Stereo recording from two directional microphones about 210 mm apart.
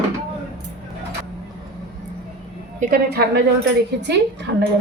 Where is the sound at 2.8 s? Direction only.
45° right (ahead or behind).